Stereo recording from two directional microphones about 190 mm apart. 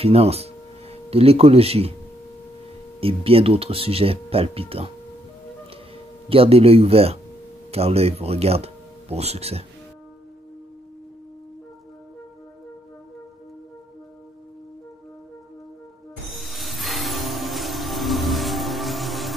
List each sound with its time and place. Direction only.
0.0 s speech: 30° right (ahead or behind)
3.0 s speech: 30° right (ahead or behind)
6.2 s speech: 30° right (ahead or behind)
16.3 s music: centre (ahead or behind)